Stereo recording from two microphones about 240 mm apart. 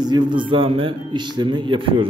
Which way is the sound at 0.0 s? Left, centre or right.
Centre.